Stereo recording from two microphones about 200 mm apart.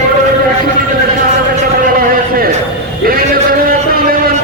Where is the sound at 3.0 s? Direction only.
45° right (ahead or behind).